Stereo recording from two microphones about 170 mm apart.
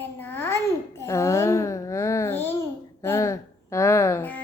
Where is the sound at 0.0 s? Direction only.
15° left (ahead or behind).